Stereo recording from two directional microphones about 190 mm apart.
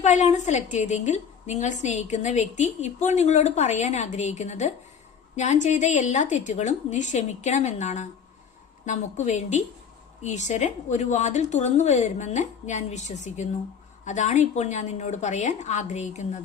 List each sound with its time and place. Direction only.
0.0 s a woman's voice: 40° left (ahead or behind)